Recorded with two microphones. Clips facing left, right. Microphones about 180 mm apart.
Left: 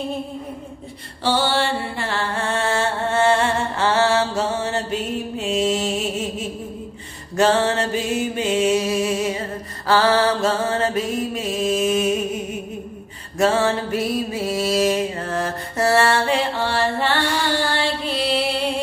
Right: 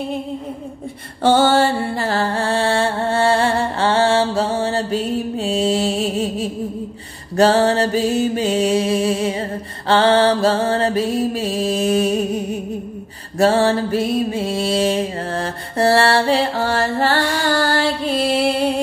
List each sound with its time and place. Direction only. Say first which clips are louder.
1.2 s music: right 6 dB; 45° right (ahead or behind)
7.3 s mantra: right 4 dB; 35° right (ahead or behind)
13.4 s music: right 4 dB; 35° right (ahead or behind)